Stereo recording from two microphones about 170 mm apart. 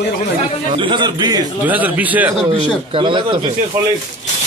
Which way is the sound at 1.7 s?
10° right (ahead or behind).